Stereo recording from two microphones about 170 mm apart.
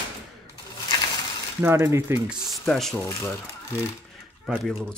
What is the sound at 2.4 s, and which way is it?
Speech, centre (ahead or behind).